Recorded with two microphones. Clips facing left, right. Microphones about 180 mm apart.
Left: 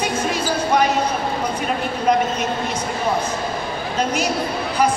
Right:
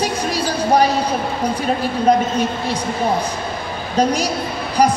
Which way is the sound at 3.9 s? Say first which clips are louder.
Right 5 dB; 35° right (ahead or behind).